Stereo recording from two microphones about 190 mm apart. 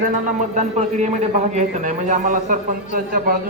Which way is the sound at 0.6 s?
35° right (ahead or behind).